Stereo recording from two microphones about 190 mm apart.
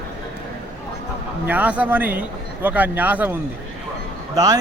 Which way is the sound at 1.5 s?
10° right (ahead or behind).